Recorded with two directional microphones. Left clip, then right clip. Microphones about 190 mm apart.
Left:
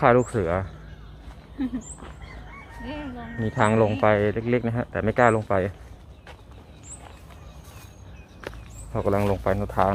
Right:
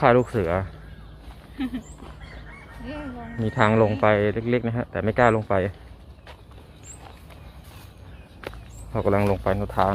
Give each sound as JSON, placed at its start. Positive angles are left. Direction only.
{"t": 0.0, "sound": "speech", "side_deg": -5}
{"t": 2.8, "sound": "speech", "side_deg": 0}
{"t": 3.4, "sound": "speech", "side_deg": -15}
{"t": 8.4, "sound": "speech", "side_deg": -10}